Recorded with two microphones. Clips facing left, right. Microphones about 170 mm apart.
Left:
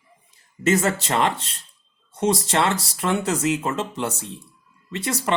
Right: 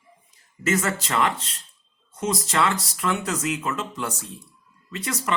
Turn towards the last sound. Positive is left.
turn(degrees=30)  # may be behind; listen again after turning